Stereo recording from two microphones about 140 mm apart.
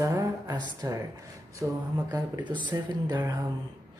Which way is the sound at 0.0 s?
20° right (ahead or behind).